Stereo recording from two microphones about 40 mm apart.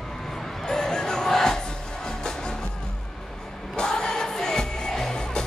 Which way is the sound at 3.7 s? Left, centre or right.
Centre.